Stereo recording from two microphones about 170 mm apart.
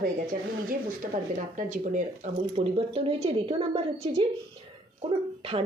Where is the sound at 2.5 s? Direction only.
35° right (ahead or behind).